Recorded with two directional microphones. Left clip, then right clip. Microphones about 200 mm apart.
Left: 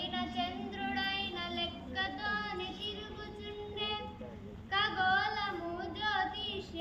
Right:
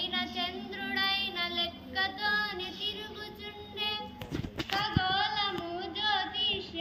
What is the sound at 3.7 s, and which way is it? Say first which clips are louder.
Child singing: right 4 dB; 10° left (ahead or behind).